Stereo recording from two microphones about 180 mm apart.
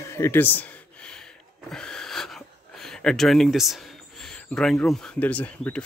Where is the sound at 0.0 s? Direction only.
15° left (ahead or behind).